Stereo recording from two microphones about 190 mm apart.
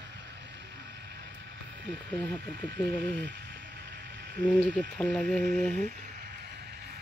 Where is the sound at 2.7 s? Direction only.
65° right (ahead or behind).